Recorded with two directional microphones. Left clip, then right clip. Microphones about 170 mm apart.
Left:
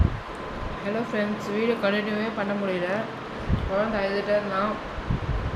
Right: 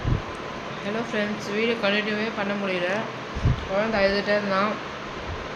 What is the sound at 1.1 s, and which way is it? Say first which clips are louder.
Speech: right 1 dB; 15° left (ahead or behind).